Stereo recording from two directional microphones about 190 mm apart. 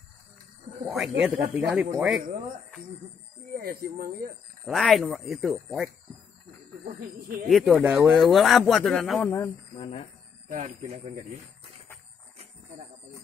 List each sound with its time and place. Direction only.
1.2 s speech: 10° right (ahead or behind)
3.5 s speech: 45° right (ahead or behind)
4.6 s speech: centre (ahead or behind)
6.8 s speech: 50° right (ahead or behind)
7.4 s speech: centre (ahead or behind)
7.9 s speech: 15° right (ahead or behind)
8.2 s speech: centre (ahead or behind)
9.8 s speech: 30° left (ahead or behind)
10.5 s speech: 40° right (ahead or behind)